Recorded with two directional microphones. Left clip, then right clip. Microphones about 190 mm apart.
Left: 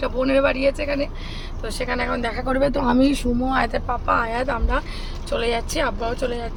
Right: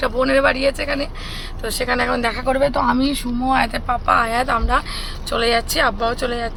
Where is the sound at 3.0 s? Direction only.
Centre (ahead or behind).